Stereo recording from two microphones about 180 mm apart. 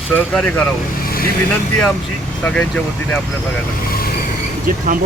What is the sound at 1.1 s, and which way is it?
Vehicle, 55° left (ahead or behind).